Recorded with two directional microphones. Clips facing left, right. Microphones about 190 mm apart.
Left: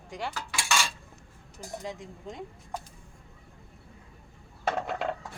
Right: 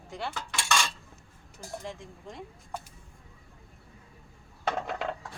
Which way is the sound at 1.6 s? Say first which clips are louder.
Left 2 dB; 15° left (ahead or behind).